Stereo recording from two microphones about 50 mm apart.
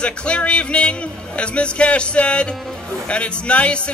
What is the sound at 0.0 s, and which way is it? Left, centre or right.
Speech, left.